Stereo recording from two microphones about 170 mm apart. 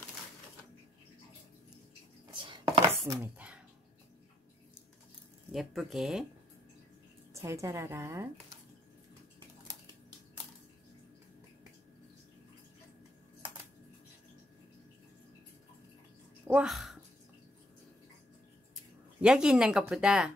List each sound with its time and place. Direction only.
2.3 s chopping: 30° right (ahead or behind)
3.1 s chopping: 10° right (ahead or behind)
5.5 s speech: centre (ahead or behind)
7.3 s a woman's voice: 15° right (ahead or behind)
16.4 s speech: 5° right (ahead or behind)
19.2 s speech: 5° right (ahead or behind)